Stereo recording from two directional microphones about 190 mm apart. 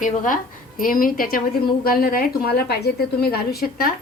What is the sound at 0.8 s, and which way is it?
A woman's voice, 45° left (ahead or behind).